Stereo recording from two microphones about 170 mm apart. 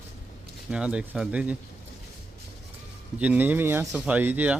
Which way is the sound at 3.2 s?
10° right (ahead or behind).